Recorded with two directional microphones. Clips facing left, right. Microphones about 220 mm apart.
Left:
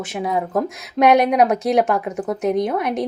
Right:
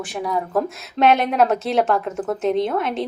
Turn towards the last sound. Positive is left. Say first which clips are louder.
# left 1 dB
turn(degrees=15)  # may be behind; listen again after turning